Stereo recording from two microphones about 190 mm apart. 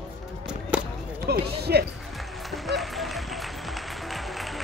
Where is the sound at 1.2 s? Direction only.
55° right (ahead or behind).